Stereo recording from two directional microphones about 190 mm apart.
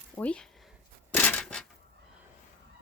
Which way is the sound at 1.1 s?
10° left (ahead or behind).